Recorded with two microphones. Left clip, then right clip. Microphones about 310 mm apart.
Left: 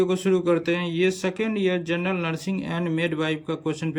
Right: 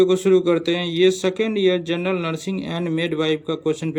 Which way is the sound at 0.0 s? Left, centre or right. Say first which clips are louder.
Right 6 dB; centre.